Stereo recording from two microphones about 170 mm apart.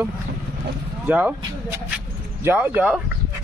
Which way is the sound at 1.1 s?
10° right (ahead or behind).